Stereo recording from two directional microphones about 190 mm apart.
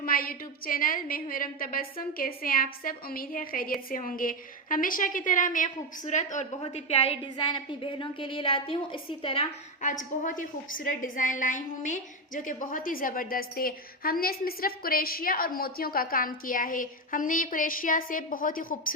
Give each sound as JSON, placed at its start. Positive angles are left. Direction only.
{"t": 0.0, "sound": "a woman's voice", "side_deg": 50}